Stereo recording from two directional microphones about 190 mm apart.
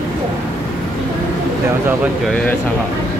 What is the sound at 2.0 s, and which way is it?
Speech, 5° left (ahead or behind).